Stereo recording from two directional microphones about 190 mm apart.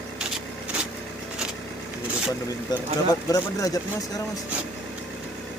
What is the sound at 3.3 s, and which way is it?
Speech, 20° left (ahead or behind).